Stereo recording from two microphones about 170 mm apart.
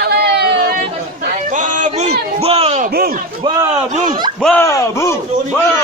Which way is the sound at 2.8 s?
65° right (ahead or behind).